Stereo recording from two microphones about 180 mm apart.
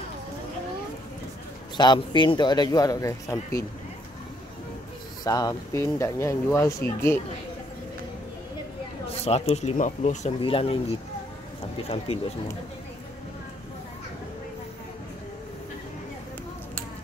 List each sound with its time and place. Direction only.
1.8 s speech: 25° left (ahead or behind)
5.2 s speech: 20° left (ahead or behind)
9.1 s speech: 35° left (ahead or behind)
12.1 s speech: 35° left (ahead or behind)